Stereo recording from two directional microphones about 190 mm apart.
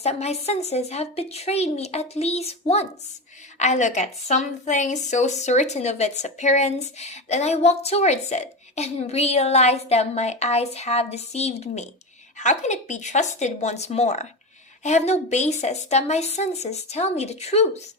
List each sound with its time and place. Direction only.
0.0 s a woman's voice: 35° left (ahead or behind)